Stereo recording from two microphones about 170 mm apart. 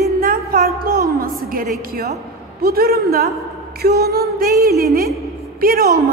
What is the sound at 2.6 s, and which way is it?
A woman's voice, 65° right (ahead or behind).